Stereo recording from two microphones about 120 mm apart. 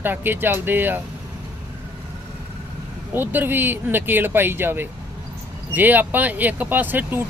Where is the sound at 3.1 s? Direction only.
15° right (ahead or behind).